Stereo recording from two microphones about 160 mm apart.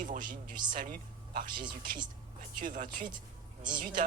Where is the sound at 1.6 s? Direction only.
30° right (ahead or behind).